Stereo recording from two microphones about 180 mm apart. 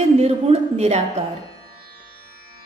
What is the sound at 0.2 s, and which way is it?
Speech, 35° right (ahead or behind).